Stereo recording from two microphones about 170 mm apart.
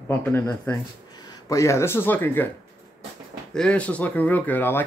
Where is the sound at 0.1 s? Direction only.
15° left (ahead or behind).